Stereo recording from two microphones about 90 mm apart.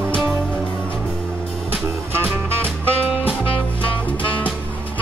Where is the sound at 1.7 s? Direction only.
20° right (ahead or behind).